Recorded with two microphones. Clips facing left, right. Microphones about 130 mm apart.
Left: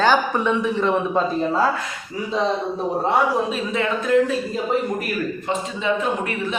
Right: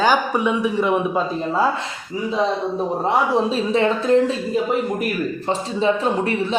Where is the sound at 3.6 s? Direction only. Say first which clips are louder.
Right 4 dB; 30° right (ahead or behind).